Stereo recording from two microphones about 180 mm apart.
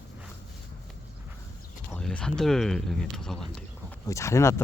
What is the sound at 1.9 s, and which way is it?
Speech, 5° left (ahead or behind).